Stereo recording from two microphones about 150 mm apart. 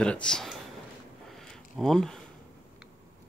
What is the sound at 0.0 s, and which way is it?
Speech, 5° left (ahead or behind).